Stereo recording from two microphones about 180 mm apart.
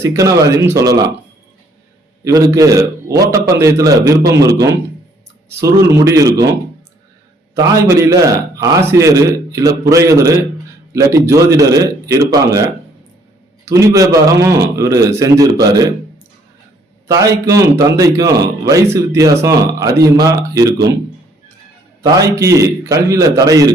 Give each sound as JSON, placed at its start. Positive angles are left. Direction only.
{"t": 0.0, "sound": "a man's voice", "side_deg": -15}
{"t": 2.2, "sound": "a man's voice", "side_deg": -20}
{"t": 7.5, "sound": "a man's voice", "side_deg": -15}
{"t": 13.7, "sound": "a man's voice", "side_deg": -15}
{"t": 17.1, "sound": "speech", "side_deg": -20}
{"t": 22.0, "sound": "a man's voice", "side_deg": -20}